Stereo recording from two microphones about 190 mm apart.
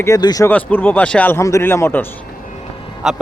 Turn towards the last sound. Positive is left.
turn(degrees=0)  # may be behind; listen again after turning